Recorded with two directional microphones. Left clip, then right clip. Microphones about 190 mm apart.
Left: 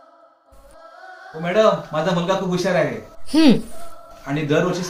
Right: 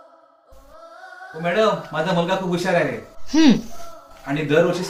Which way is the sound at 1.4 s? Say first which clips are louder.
Left 2 dB; 15° left (ahead or behind).